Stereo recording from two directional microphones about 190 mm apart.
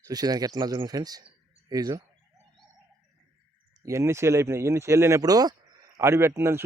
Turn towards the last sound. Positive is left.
turn(degrees=-15)  # may be behind; listen again after turning